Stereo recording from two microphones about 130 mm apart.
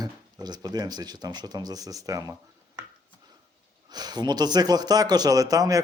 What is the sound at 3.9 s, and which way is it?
Speech, 30° right (ahead or behind).